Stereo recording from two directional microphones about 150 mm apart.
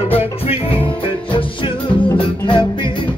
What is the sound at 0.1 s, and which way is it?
Music, 40° left (ahead or behind).